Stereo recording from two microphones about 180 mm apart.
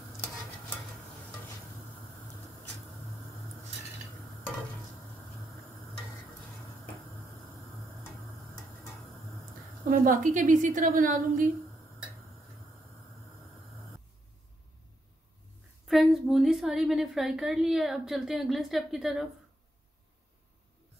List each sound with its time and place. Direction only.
9.8 s a woman's voice: 50° right (ahead or behind)
15.9 s a woman's voice: centre (ahead or behind)